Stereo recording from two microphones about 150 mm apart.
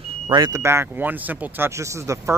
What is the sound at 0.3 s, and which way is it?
Speech, 30° right (ahead or behind).